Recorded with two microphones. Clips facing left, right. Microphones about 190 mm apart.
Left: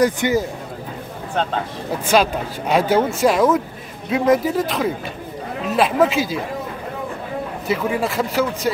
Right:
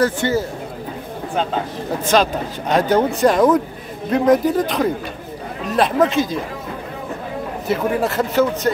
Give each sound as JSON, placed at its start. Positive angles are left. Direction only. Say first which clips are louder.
{"t": 0.0, "sound": "speech", "louder": "left 1 dB", "side_deg": 15}
{"t": 1.3, "sound": "speech", "louder": "right 1 dB", "side_deg": -5}
{"t": 2.1, "sound": "speech", "louder": "even", "side_deg": 10}
{"t": 7.6, "sound": "speech", "louder": "right 2 dB", "side_deg": 0}